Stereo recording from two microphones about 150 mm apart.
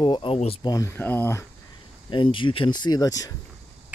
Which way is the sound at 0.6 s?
20° left (ahead or behind).